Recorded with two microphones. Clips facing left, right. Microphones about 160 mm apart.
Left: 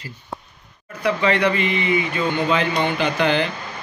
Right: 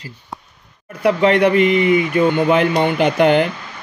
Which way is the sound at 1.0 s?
55° right (ahead or behind).